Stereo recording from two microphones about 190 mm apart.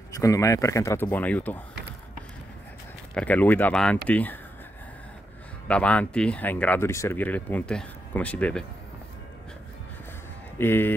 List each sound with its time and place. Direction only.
0.1 s speech: 15° left (ahead or behind)
3.2 s speech: 10° left (ahead or behind)
5.7 s speech: 5° left (ahead or behind)
10.6 s speech: 10° left (ahead or behind)